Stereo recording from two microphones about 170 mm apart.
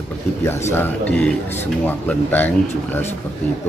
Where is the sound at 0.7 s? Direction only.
10° left (ahead or behind).